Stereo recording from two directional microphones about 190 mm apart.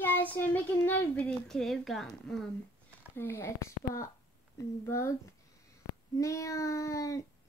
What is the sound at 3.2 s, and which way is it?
A child's voice, 10° left (ahead or behind).